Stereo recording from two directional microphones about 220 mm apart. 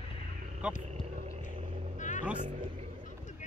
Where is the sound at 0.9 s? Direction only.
30° right (ahead or behind).